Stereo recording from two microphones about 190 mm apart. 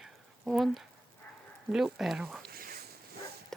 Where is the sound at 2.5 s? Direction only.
50° right (ahead or behind).